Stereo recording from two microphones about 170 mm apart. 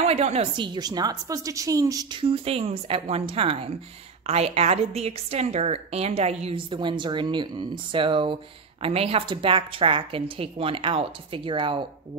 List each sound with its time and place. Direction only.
0.0 s a woman's voice: 40° right (ahead or behind)
0.7 s a woman's voice: 25° right (ahead or behind)